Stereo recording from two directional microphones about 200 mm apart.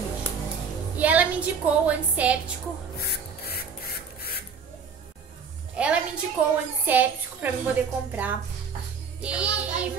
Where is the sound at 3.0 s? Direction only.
50° left (ahead or behind).